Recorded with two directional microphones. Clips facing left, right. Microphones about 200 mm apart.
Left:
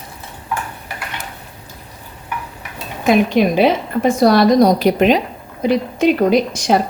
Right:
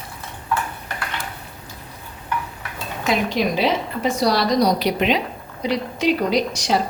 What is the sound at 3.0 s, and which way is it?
A woman's voice, 55° left (ahead or behind).